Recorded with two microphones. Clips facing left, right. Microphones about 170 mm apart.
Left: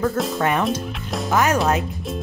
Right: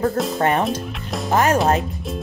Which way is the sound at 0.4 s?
40° right (ahead or behind).